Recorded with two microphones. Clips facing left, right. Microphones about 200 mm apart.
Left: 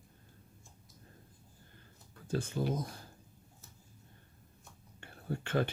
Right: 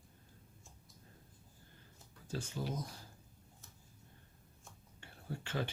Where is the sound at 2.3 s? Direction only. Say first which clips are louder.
Left 7 dB; 55° left (ahead or behind).